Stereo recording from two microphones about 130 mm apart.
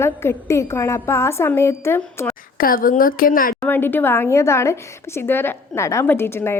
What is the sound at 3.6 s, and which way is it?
A woman's voice, 15° left (ahead or behind).